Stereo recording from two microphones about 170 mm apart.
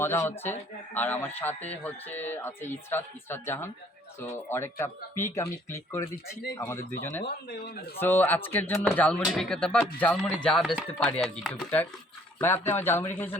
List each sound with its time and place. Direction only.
0.0 s speech: 15° left (ahead or behind)
7.3 s speech: 70° left (ahead or behind)
7.9 s speech: 10° left (ahead or behind)